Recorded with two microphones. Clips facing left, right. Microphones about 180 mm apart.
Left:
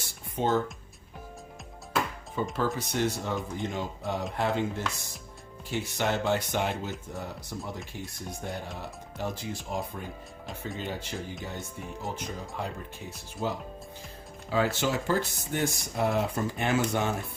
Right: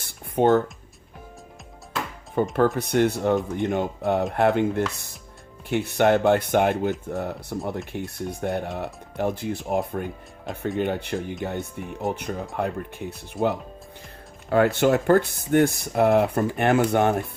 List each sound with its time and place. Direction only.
0.0 s music: 60° right (ahead or behind)
2.4 s speech: 60° right (ahead or behind)